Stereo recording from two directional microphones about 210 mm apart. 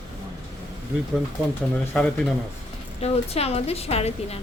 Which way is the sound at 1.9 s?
Centre (ahead or behind).